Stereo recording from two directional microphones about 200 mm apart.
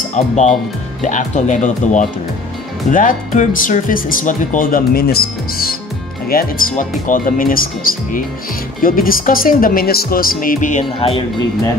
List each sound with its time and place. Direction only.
1.0 s speech: 40° left (ahead or behind)